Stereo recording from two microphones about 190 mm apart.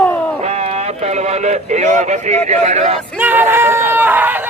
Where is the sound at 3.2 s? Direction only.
10° right (ahead or behind).